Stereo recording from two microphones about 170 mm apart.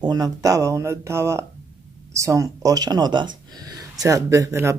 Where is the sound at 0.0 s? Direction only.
20° right (ahead or behind).